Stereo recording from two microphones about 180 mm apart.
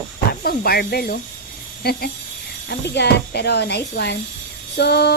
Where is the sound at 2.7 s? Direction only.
70° left (ahead or behind).